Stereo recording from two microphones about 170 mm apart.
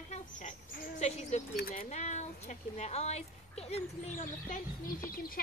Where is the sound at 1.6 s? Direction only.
60° left (ahead or behind).